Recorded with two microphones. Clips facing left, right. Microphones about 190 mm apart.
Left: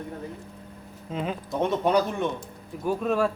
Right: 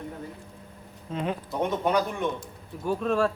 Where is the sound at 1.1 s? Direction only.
Centre (ahead or behind).